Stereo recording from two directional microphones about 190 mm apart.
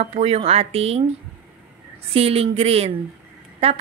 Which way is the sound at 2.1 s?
30° right (ahead or behind).